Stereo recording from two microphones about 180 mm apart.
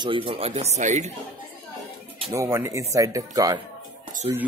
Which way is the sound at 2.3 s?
15° right (ahead or behind).